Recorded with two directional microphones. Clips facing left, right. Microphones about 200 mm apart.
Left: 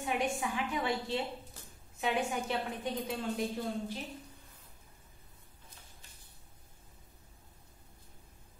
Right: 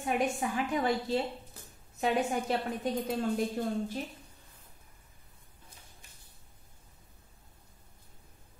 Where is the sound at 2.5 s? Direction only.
40° right (ahead or behind).